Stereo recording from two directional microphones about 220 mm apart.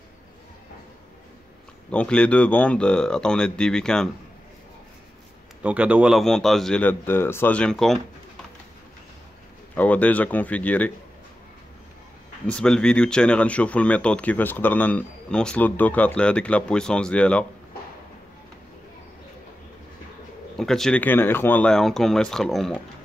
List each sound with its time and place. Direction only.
1.9 s speech: 5° left (ahead or behind)
5.6 s speech: 5° right (ahead or behind)
9.8 s speech: 5° left (ahead or behind)
12.4 s speech: 5° left (ahead or behind)
20.5 s speech: centre (ahead or behind)